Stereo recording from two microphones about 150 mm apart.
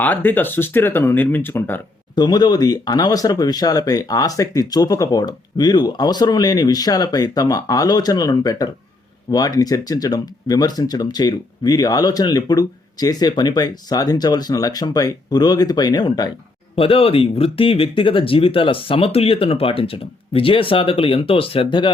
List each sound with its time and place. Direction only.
0.0 s speech: 10° left (ahead or behind)
2.1 s speech: 30° left (ahead or behind)
16.7 s speech: 40° left (ahead or behind)